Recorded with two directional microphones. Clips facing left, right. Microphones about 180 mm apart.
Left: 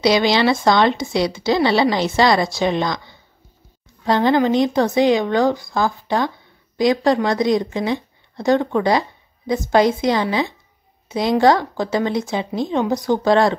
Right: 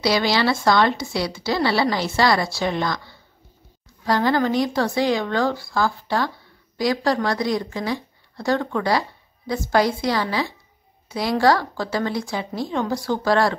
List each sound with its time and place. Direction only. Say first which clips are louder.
0.0 s a woman's voice: left 4 dB; 20° left (ahead or behind)